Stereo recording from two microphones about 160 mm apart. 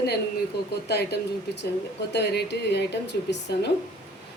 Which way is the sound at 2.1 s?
90° left.